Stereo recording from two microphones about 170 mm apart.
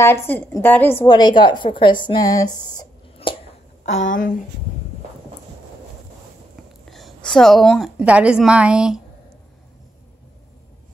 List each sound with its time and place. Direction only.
0.0 s a woman's voice: 15° left (ahead or behind)
1.0 s speech: 25° left (ahead or behind)
3.2 s a sound: 35° left (ahead or behind)
4.1 s speech: 50° left (ahead or behind)
6.9 s a woman's voice: centre (ahead or behind)